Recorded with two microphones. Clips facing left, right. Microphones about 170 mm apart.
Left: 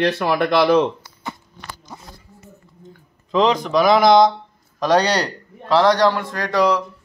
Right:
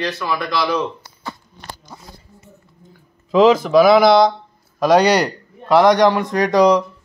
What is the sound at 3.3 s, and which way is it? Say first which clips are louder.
A man's voice: right 5 dB; 5° right (ahead or behind).